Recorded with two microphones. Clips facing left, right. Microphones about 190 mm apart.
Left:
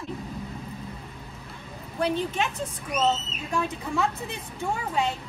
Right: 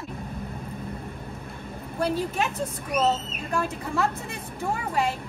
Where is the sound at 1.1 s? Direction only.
55° right (ahead or behind).